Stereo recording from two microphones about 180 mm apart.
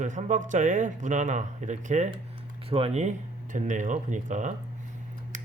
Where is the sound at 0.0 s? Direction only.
45° right (ahead or behind).